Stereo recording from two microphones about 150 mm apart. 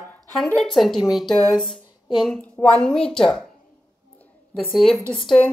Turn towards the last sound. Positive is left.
turn(degrees=5)  # may be behind; listen again after turning